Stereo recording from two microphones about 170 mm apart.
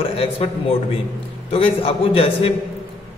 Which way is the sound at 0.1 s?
35° left (ahead or behind).